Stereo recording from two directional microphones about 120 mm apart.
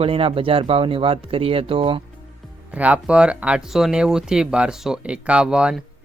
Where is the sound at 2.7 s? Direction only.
10° right (ahead or behind).